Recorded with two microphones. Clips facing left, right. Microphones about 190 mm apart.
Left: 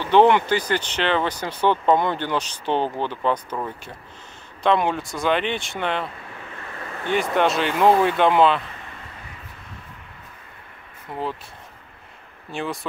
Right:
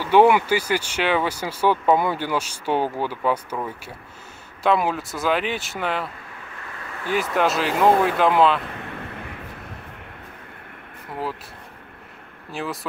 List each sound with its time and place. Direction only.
0.0 s speech: 10° right (ahead or behind)
7.1 s speech: centre (ahead or behind)
8.7 s vehicle: 60° right (ahead or behind)
12.4 s speech: centre (ahead or behind)